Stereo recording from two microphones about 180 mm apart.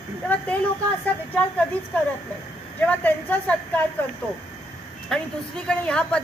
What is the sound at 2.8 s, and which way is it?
Speech, 10° left (ahead or behind).